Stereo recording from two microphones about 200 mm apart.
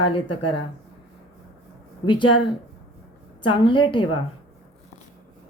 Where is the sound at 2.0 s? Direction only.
25° left (ahead or behind).